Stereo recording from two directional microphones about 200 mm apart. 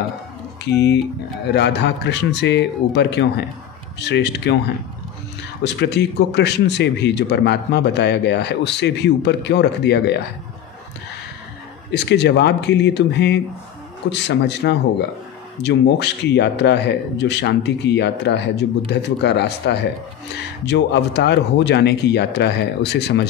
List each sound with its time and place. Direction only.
1.5 s speech: 60° left (ahead or behind)
5.6 s speech: 60° left (ahead or behind)
11.9 s speech: 60° left (ahead or behind)